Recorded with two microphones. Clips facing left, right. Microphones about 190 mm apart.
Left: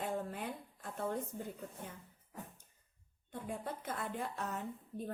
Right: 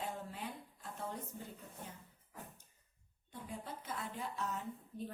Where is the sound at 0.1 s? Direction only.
55° left (ahead or behind).